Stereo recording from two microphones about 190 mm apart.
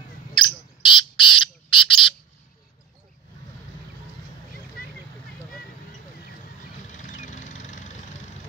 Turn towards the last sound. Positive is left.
turn(degrees=40)  # may be behind; listen again after turning